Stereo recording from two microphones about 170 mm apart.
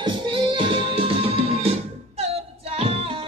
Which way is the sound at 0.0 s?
30° right (ahead or behind).